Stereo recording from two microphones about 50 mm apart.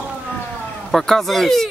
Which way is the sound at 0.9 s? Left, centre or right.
Centre.